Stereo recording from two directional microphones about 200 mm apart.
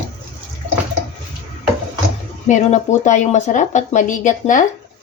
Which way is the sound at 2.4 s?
35° left (ahead or behind).